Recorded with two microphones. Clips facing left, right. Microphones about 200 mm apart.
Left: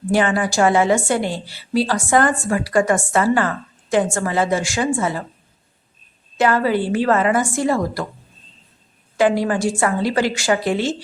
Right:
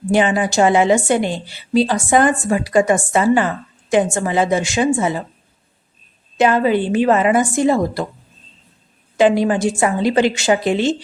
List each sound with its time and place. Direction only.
0.1 s a woman's voice: 20° right (ahead or behind)
6.3 s a woman's voice: 20° right (ahead or behind)
9.1 s a woman's voice: 20° right (ahead or behind)